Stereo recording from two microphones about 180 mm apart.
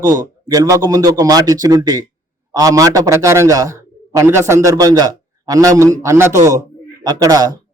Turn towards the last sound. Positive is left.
turn(degrees=-20)  # may be behind; listen again after turning